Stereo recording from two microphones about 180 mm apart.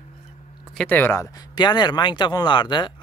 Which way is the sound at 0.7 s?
10° left (ahead or behind).